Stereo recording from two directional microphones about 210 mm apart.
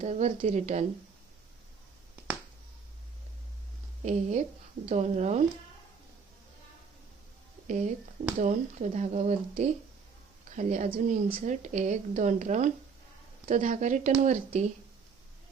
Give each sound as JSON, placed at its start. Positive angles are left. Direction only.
{"t": 0.0, "sound": "a woman's voice", "side_deg": -35}
{"t": 4.0, "sound": "a woman's voice", "side_deg": -35}
{"t": 7.7, "sound": "a woman's voice", "side_deg": -35}